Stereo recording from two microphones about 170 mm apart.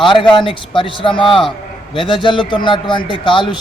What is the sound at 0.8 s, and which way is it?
Speech, 30° left (ahead or behind).